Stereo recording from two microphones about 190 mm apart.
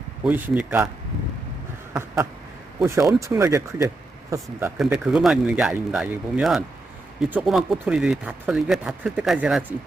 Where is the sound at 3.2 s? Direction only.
15° right (ahead or behind).